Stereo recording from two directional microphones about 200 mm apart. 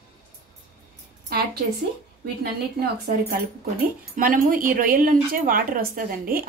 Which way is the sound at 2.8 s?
50° right (ahead or behind).